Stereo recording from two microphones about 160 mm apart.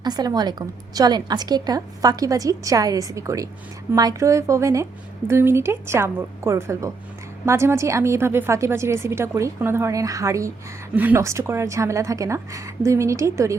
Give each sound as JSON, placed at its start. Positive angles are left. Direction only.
{"t": 0.0, "sound": "a woman's voice", "side_deg": -25}